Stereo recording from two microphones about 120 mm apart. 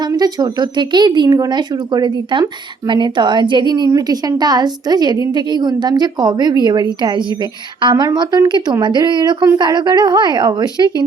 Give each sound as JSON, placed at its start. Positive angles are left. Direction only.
{"t": 0.0, "sound": "speech", "side_deg": -35}